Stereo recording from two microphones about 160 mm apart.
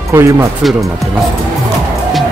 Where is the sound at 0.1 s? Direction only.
15° right (ahead or behind).